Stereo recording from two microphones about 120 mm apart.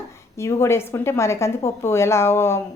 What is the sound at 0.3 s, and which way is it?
A woman's voice, 20° left (ahead or behind).